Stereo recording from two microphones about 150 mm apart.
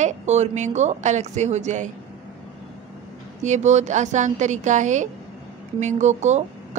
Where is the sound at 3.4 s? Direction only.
50° right (ahead or behind).